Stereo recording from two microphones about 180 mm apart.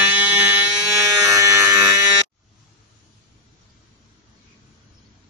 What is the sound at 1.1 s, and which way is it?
Electric shaver, 15° right (ahead or behind).